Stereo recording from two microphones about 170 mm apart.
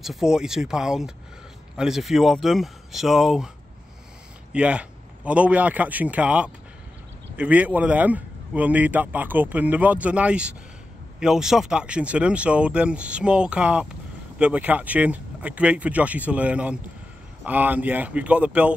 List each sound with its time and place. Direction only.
0.0 s speech: centre (ahead or behind)
4.5 s a man's voice: 5° right (ahead or behind)